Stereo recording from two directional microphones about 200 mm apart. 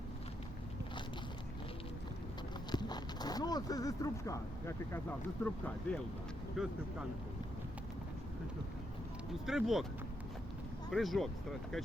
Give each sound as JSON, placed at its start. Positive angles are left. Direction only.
{"t": 2.7, "sound": "a sound", "side_deg": 20}
{"t": 5.4, "sound": "speech", "side_deg": 10}
{"t": 9.5, "sound": "speech", "side_deg": 0}
{"t": 10.9, "sound": "speech", "side_deg": 0}